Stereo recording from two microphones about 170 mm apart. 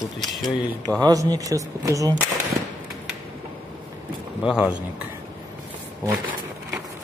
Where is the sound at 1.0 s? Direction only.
20° right (ahead or behind).